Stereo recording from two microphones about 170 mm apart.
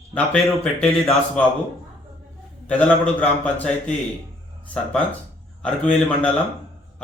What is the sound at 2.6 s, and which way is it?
Speech, 10° left (ahead or behind).